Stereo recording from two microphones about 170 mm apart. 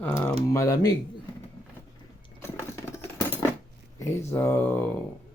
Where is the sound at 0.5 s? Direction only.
20° left (ahead or behind).